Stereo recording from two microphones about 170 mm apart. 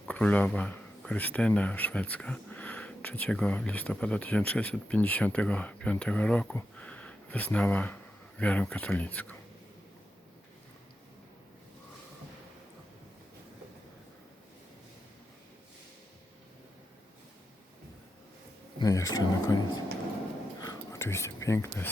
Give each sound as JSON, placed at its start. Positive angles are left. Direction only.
{"t": 0.1, "sound": "speech", "side_deg": 10}
{"t": 18.8, "sound": "speech", "side_deg": 20}
{"t": 20.6, "sound": "whispering", "side_deg": 20}